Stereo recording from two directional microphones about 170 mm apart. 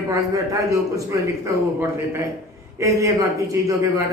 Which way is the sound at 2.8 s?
20° right (ahead or behind).